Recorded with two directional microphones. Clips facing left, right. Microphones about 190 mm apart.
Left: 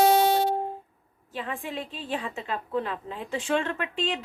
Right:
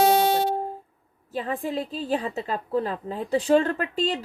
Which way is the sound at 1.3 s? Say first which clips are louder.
Right 6 dB; 40° right (ahead or behind).